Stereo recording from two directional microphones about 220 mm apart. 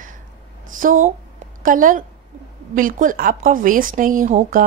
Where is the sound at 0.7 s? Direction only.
35° right (ahead or behind).